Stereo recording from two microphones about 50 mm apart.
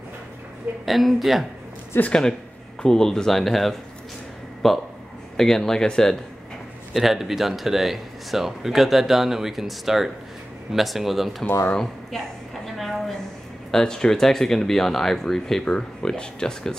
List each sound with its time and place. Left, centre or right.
0.8 s speech: centre
1.9 s speech: left
2.8 s speech: centre
6.9 s speech: centre
11.7 s speech: centre
12.6 s a sound: centre
13.7 s speech: centre